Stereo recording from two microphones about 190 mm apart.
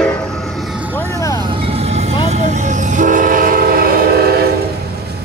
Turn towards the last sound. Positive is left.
turn(degrees=-55)  # may be behind; listen again after turning